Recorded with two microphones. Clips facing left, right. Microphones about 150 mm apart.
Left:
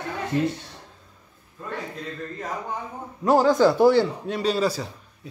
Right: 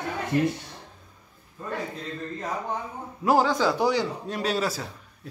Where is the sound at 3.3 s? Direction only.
Centre (ahead or behind).